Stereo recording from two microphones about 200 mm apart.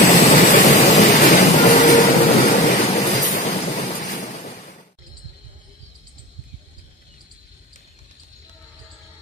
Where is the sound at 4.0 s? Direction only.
40° left (ahead or behind).